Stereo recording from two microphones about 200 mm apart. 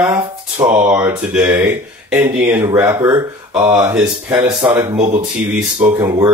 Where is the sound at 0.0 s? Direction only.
10° right (ahead or behind).